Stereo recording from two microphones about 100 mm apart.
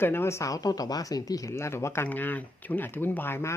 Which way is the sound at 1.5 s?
25° left (ahead or behind).